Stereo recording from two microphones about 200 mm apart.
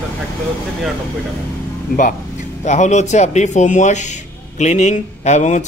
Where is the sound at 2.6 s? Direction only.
35° left (ahead or behind).